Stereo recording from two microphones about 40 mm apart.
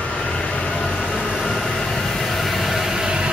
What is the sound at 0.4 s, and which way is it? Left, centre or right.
Vehicle, centre.